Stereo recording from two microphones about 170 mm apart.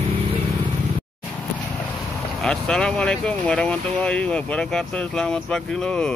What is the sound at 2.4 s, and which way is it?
Speech, 5° left (ahead or behind).